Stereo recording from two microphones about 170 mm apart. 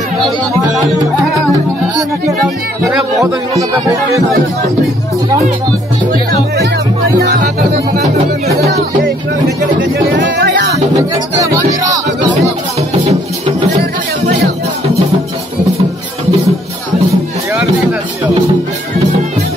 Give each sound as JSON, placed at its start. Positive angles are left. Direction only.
{"t": 10.1, "sound": "music", "side_deg": -90}
{"t": 11.8, "sound": "music", "side_deg": -20}